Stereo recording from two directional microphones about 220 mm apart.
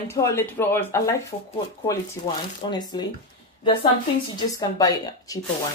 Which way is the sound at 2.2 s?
20° left (ahead or behind).